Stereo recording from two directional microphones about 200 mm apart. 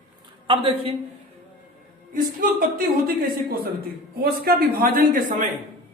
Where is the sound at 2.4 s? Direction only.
45° right (ahead or behind).